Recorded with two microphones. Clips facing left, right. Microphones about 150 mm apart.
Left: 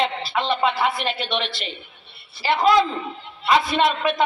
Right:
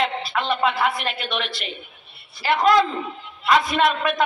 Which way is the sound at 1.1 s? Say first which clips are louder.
Left 2 dB; 30° left (ahead or behind).